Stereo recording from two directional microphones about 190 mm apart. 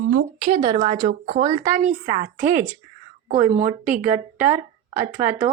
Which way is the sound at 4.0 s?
10° right (ahead or behind).